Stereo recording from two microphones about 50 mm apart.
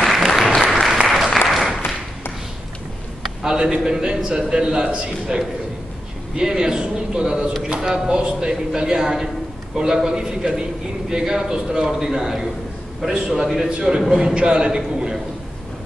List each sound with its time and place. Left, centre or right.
0.0 s applause: centre
3.4 s speech: centre
13.7 s speech: centre